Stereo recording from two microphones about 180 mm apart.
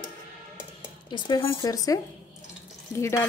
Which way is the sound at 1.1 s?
25° left (ahead or behind).